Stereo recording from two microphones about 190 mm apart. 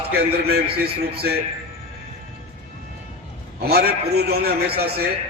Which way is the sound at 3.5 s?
55° right (ahead or behind).